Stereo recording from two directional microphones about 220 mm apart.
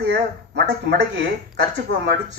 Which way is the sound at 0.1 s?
50° right (ahead or behind).